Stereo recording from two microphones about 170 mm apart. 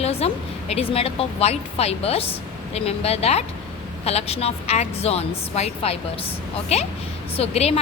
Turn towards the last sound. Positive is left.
turn(degrees=40)  # may be behind; listen again after turning